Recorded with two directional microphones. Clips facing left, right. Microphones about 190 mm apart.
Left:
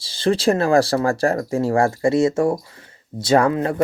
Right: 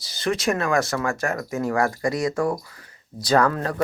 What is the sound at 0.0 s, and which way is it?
Speech, 30° left (ahead or behind).